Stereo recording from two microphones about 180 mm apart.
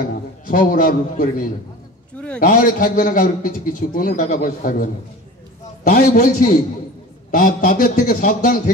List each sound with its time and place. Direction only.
0.5 s a man's voice: 50° left (ahead or behind)
2.1 s a sound: 5° left (ahead or behind)
2.4 s a man's voice: 50° left (ahead or behind)
5.9 s a man's voice: 50° left (ahead or behind)